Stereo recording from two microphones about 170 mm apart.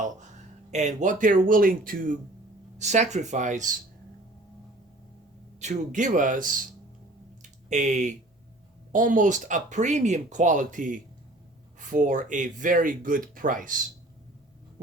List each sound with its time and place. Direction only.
0.7 s speech: 45° right (ahead or behind)
2.7 s speech: 45° right (ahead or behind)
5.5 s speech: 45° right (ahead or behind)
7.4 s a sound: 45° right (ahead or behind)
8.9 s speech: 50° right (ahead or behind)